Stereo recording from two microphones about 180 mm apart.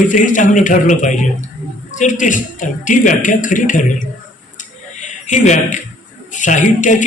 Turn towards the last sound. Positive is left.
turn(degrees=45)  # may be behind; listen again after turning